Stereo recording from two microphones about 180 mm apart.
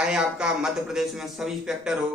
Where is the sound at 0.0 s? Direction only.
5° right (ahead or behind).